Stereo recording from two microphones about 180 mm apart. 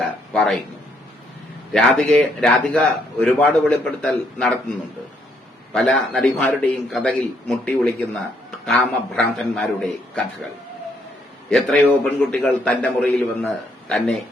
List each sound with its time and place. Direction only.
0.0 s speech: centre (ahead or behind)
1.7 s speech: centre (ahead or behind)
5.7 s speech: 5° left (ahead or behind)
11.5 s speech: 5° left (ahead or behind)